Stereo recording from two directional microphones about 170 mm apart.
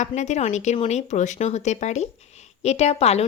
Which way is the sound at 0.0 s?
45° left (ahead or behind).